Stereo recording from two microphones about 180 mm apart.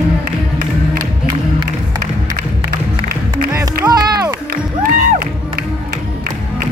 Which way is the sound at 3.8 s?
20° right (ahead or behind).